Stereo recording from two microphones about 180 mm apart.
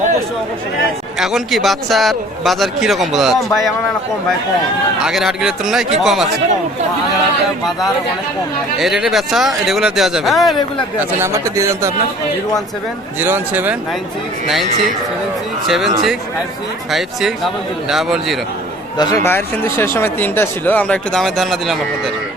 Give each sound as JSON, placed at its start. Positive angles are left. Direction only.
{"t": 1.2, "sound": "a man's voice", "side_deg": 0}
{"t": 5.0, "sound": "a man's voice", "side_deg": -5}
{"t": 8.8, "sound": "a man's voice", "side_deg": 0}
{"t": 11.2, "sound": "speech", "side_deg": -15}
{"t": 13.1, "sound": "a man's voice", "side_deg": -10}
{"t": 18.9, "sound": "speech", "side_deg": 15}